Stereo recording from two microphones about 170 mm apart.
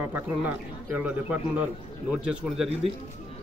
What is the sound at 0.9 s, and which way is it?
A man's voice, 10° right (ahead or behind).